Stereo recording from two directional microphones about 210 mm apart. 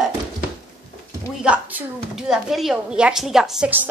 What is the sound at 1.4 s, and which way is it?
A woman's voice, 5° right (ahead or behind).